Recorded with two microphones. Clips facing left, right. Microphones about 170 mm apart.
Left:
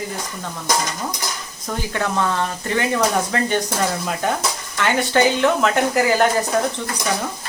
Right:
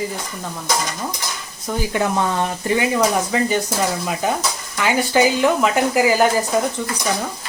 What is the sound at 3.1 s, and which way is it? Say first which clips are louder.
Speech: right 1 dB; 5° right (ahead or behind).